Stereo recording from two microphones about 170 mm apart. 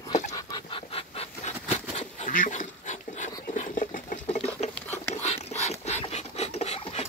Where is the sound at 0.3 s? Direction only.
30° left (ahead or behind).